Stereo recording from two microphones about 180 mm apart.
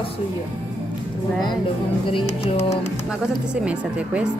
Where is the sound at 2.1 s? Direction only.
30° left (ahead or behind).